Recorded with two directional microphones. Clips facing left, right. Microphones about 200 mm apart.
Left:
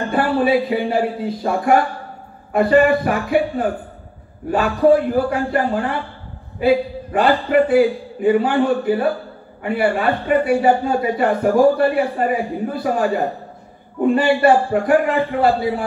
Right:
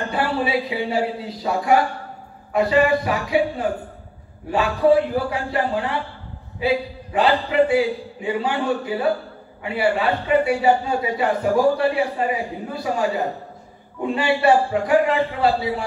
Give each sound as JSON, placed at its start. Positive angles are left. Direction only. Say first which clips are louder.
{"t": 0.1, "sound": "a man's voice", "louder": "left 7 dB", "side_deg": 50}